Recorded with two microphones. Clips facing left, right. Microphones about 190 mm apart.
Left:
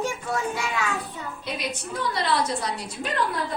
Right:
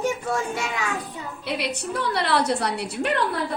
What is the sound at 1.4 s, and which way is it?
A woman's voice, 65° right (ahead or behind).